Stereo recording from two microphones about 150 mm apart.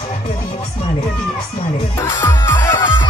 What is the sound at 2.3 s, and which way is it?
Music, 15° left (ahead or behind).